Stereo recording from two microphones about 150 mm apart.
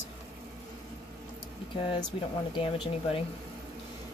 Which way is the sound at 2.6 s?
35° left (ahead or behind).